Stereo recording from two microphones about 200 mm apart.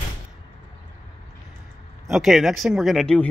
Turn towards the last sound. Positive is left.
turn(degrees=5)  # may be behind; listen again after turning